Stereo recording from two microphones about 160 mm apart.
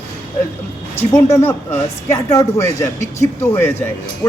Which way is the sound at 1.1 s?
15° left (ahead or behind).